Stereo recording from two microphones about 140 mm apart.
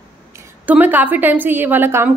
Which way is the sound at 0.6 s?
10° right (ahead or behind).